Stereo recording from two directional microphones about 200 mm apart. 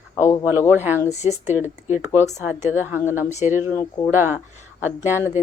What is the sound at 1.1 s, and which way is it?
Speech, 35° left (ahead or behind).